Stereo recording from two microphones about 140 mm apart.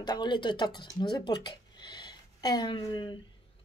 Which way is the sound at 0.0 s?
30° left (ahead or behind).